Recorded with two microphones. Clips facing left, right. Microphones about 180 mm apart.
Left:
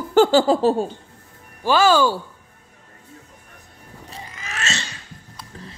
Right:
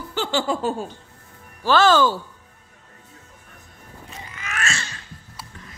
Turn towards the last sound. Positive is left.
turn(degrees=30)  # may be behind; listen again after turning